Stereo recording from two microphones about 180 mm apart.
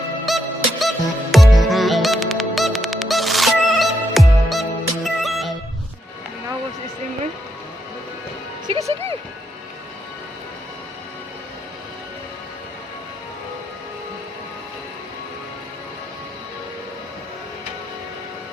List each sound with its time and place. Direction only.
0.3 s music: centre (ahead or behind)
8.6 s music: 30° right (ahead or behind)